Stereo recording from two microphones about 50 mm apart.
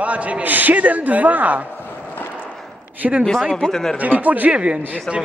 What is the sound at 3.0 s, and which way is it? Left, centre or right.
Speech, centre.